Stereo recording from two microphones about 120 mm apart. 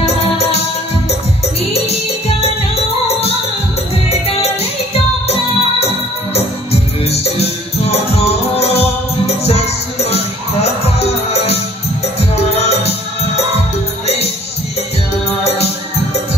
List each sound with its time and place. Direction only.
0.0 s music: 60° left (ahead or behind)
1.7 s music: 55° left (ahead or behind)
14.0 s music: 60° left (ahead or behind)